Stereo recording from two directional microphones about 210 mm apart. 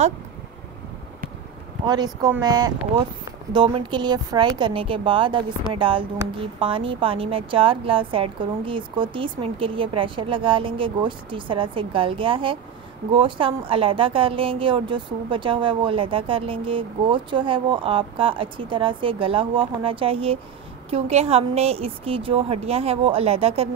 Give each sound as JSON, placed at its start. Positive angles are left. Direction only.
{"t": 1.9, "sound": "a woman's voice", "side_deg": -20}